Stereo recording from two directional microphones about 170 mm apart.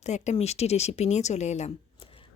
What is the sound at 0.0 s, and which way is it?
Speech, 40° left (ahead or behind).